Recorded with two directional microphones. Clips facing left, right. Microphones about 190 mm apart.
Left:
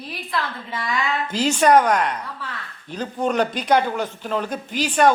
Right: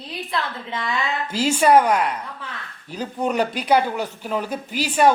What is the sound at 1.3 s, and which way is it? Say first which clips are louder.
Speech: even; 5° right (ahead or behind).